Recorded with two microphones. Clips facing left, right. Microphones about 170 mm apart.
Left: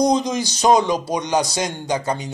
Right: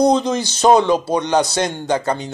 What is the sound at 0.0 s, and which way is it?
A man's voice, 30° right (ahead or behind).